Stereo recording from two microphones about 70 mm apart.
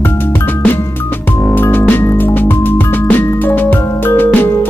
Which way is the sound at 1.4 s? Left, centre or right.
Left.